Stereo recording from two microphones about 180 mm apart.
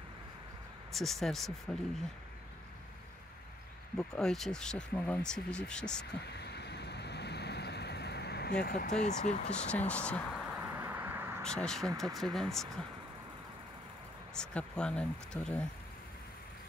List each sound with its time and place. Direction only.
0.9 s speech: centre (ahead or behind)
4.1 s speech: 5° left (ahead or behind)
6.2 s vehicle: 65° left (ahead or behind)
8.8 s speech: 40° left (ahead or behind)
9.5 s speech: 5° left (ahead or behind)
10.8 s a sound: 10° right (ahead or behind)
11.4 s speech: 5° left (ahead or behind)
14.3 s speech: 5° left (ahead or behind)